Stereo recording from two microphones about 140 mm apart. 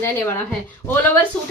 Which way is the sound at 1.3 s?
5° left (ahead or behind).